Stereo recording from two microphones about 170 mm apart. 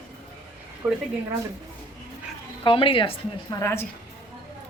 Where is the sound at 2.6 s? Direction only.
30° left (ahead or behind).